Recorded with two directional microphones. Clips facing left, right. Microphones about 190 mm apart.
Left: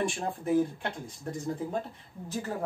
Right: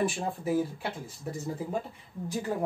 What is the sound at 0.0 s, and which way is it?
Speech, 5° right (ahead or behind).